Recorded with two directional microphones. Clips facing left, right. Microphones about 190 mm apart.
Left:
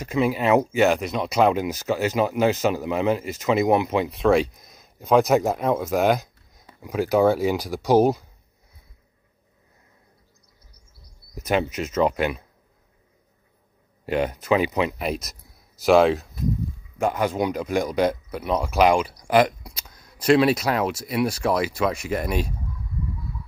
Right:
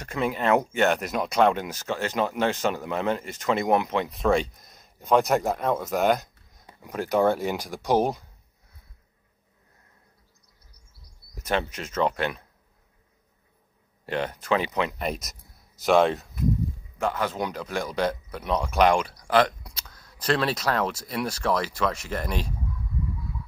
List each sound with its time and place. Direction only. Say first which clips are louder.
0.0 s speech: left 4 dB; 5° left (ahead or behind)
11.3 s speech: left 4 dB; 10° left (ahead or behind)
14.0 s speech: left 5 dB; 10° left (ahead or behind)
17.0 s speech: left 5 dB; 15° left (ahead or behind)